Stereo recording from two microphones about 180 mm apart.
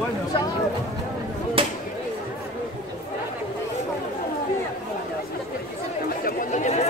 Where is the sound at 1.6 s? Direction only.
30° right (ahead or behind).